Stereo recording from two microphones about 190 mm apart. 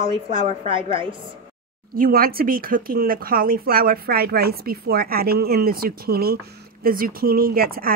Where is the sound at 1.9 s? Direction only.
50° right (ahead or behind).